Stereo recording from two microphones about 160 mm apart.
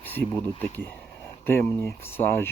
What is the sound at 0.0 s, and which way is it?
Speech, 10° left (ahead or behind).